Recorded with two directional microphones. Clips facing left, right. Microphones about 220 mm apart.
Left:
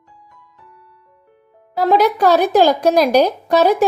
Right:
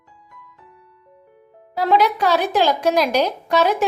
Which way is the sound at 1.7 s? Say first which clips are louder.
Left 3 dB; 40° left (ahead or behind).